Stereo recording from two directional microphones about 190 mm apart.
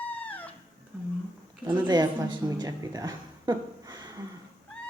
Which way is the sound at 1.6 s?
20° right (ahead or behind).